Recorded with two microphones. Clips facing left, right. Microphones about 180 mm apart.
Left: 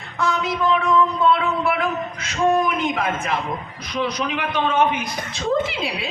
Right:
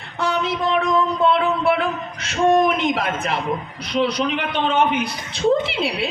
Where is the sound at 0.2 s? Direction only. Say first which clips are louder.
Even; 30° right (ahead or behind).